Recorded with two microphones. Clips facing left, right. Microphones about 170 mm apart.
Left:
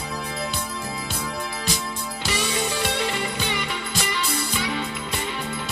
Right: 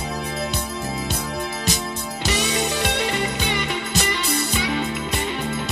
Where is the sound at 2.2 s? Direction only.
20° right (ahead or behind).